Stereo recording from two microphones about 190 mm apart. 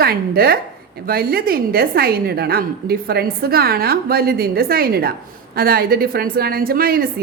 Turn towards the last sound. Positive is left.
turn(degrees=-50)  # may be behind; listen again after turning